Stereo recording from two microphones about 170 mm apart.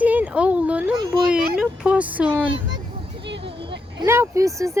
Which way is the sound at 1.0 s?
25° right (ahead or behind).